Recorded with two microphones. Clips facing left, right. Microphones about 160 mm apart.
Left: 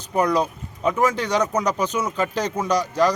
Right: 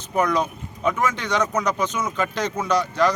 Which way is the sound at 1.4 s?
10° left (ahead or behind).